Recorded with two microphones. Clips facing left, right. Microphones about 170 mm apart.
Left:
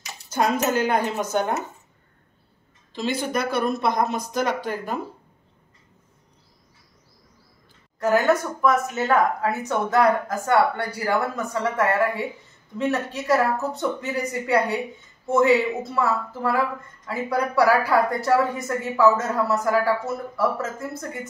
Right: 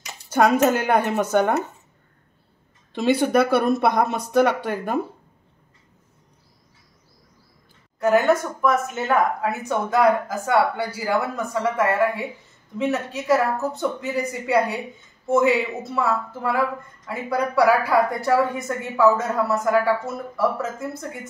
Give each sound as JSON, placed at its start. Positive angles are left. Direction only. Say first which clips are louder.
{"t": 0.3, "sound": "speech", "louder": "right 5 dB", "side_deg": -60}
{"t": 2.9, "sound": "speech", "louder": "right 7 dB", "side_deg": -60}
{"t": 8.0, "sound": "a woman's voice", "louder": "right 2 dB", "side_deg": 0}